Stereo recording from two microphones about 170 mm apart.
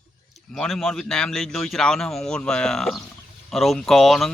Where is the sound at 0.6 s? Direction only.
5° left (ahead or behind).